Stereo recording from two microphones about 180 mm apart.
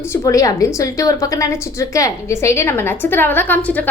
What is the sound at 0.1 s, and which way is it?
A woman's voice, 20° left (ahead or behind).